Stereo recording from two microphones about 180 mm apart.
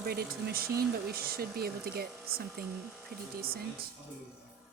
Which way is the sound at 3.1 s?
55° right (ahead or behind).